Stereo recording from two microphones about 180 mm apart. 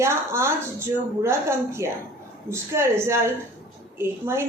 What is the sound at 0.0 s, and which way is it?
Speech, 15° right (ahead or behind).